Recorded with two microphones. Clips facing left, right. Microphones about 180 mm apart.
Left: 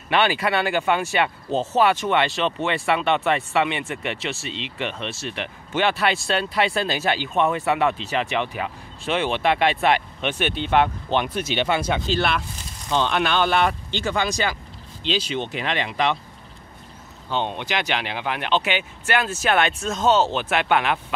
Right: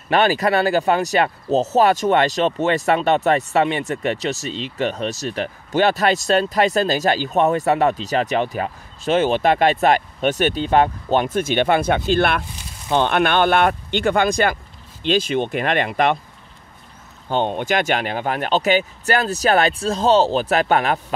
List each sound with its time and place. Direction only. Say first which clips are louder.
0.1 s speech: right 4 dB; 40° right (ahead or behind)
17.3 s speech: right 6 dB; 45° right (ahead or behind)